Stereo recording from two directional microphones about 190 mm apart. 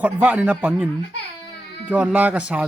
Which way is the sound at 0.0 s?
10° right (ahead or behind).